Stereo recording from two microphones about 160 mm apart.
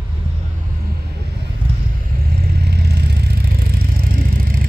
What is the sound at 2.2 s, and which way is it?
Vehicle, 75° right (ahead or behind).